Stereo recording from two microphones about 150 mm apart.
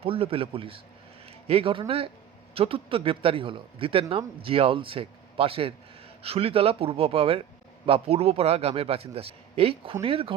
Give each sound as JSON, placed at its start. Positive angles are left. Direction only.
{"t": 0.0, "sound": "a man's voice", "side_deg": -40}